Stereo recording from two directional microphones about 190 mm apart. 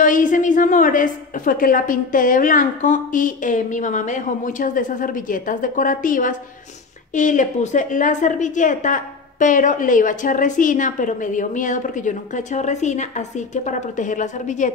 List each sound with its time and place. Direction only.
0.0 s a woman's voice: 45° left (ahead or behind)